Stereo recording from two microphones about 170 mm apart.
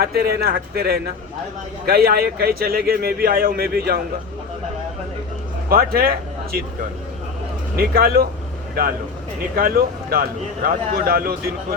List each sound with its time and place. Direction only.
0.0 s a man's voice: 65° right (ahead or behind)
5.6 s speech: 60° right (ahead or behind)
7.8 s a man's voice: 65° right (ahead or behind)